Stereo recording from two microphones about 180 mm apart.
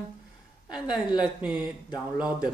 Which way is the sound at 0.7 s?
5° right (ahead or behind).